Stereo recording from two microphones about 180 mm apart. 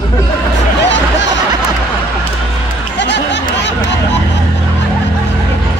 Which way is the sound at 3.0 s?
75° left (ahead or behind).